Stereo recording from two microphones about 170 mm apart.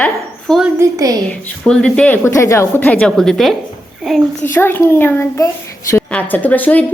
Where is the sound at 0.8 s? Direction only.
20° right (ahead or behind).